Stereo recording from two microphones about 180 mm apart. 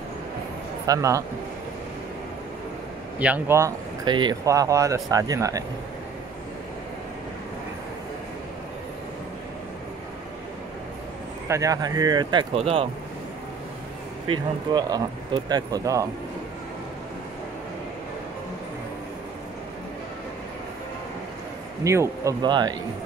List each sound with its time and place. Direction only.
0.8 s speech: 20° right (ahead or behind)
3.2 s speech: 10° right (ahead or behind)
11.4 s speech: 15° right (ahead or behind); by 12.8 s 30° right (ahead or behind)
14.3 s speech: 20° right (ahead or behind)
21.8 s speech: 15° right (ahead or behind)